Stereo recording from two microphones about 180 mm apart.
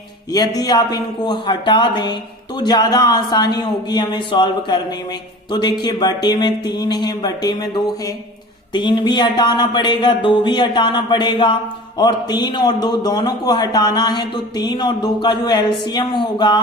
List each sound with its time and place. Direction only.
0.3 s a man's voice: 20° left (ahead or behind)